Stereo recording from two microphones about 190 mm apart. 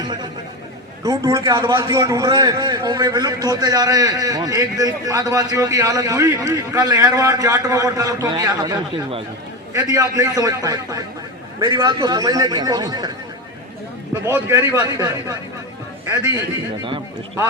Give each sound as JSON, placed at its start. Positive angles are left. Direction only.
{"t": 0.0, "sound": "a man's voice", "side_deg": -20}
{"t": 14.1, "sound": "a man's voice", "side_deg": -10}
{"t": 16.0, "sound": "a man's voice", "side_deg": -10}